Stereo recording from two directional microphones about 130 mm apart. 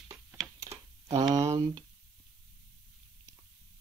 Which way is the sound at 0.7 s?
25° right (ahead or behind).